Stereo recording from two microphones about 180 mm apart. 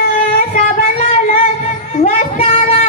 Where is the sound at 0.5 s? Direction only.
45° left (ahead or behind).